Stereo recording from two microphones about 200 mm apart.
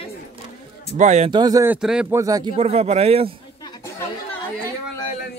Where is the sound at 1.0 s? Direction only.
35° right (ahead or behind).